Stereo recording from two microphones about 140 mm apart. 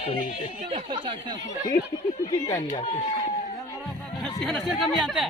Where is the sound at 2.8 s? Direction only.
35° left (ahead or behind).